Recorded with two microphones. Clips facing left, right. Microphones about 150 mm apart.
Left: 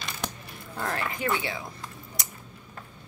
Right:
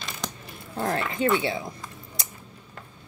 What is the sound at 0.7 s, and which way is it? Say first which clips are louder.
Speech: right 4 dB; 25° right (ahead or behind).